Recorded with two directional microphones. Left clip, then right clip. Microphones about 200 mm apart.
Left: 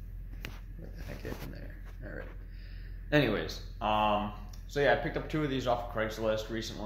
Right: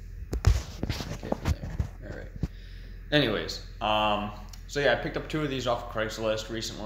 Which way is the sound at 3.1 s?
15° right (ahead or behind).